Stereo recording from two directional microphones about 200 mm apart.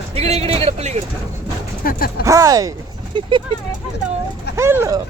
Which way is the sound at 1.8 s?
45° left (ahead or behind).